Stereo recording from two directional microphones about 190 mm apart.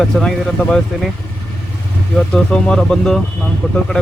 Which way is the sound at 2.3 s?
5° left (ahead or behind).